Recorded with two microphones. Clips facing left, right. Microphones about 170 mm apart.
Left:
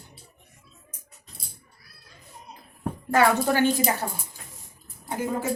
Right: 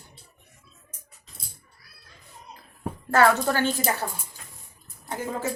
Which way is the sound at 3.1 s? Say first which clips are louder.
Even; 15° left (ahead or behind).